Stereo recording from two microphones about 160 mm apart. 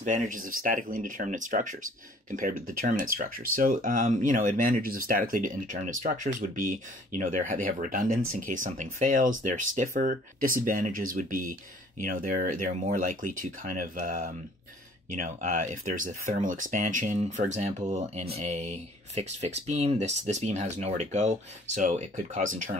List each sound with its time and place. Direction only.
0.0 s speech: 50° right (ahead or behind)